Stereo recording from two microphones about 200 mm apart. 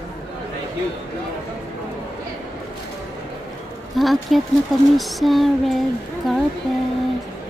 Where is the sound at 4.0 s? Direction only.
Centre (ahead or behind).